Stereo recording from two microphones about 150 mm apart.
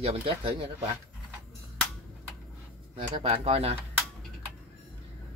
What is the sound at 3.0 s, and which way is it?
Speech, 40° right (ahead or behind).